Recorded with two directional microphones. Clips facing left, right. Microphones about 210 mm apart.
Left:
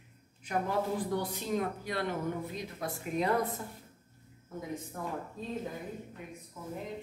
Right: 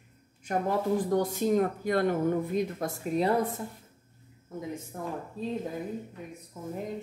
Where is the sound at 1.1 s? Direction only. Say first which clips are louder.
Right 7 dB; 45° right (ahead or behind).